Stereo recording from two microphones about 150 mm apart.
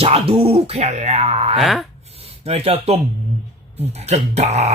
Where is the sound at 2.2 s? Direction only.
40° right (ahead or behind).